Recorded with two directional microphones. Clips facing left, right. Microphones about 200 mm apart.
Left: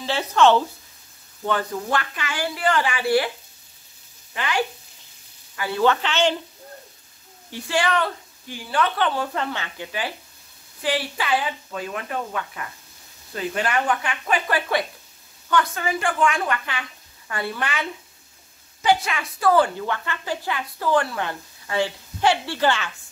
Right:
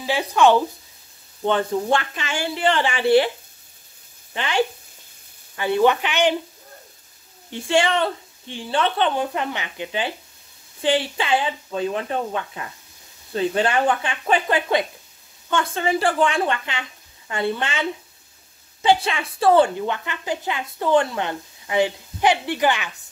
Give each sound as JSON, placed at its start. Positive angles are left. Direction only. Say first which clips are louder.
{"t": 0.0, "sound": "speech", "louder": "right 1 dB", "side_deg": -10}
{"t": 1.4, "sound": "a woman's voice", "louder": "right 4 dB", "side_deg": -25}
{"t": 4.3, "sound": "speech", "louder": "right 3 dB", "side_deg": -25}
{"t": 7.5, "sound": "a woman's voice", "louder": "right 3 dB", "side_deg": -25}